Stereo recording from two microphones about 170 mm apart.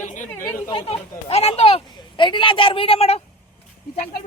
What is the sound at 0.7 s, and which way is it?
Speech, 35° left (ahead or behind).